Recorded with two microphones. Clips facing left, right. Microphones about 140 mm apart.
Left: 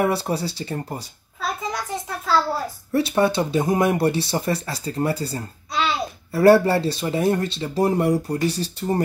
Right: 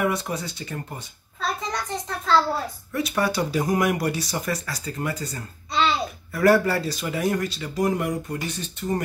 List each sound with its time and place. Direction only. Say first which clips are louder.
0.0 s speech: left 4 dB; 30° left (ahead or behind)
1.4 s a sound: left 1 dB; 5° left (ahead or behind)
2.9 s speech: left 6 dB; 25° left (ahead or behind)
5.7 s babbling: right 1 dB; centre (ahead or behind)
6.3 s speech: left 5 dB; 30° left (ahead or behind)